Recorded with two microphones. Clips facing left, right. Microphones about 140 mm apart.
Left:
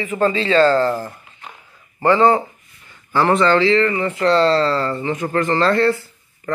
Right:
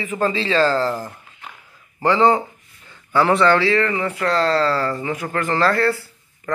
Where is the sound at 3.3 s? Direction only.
20° left (ahead or behind).